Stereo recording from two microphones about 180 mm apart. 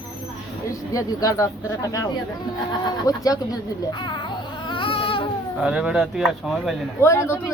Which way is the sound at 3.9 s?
25° left (ahead or behind).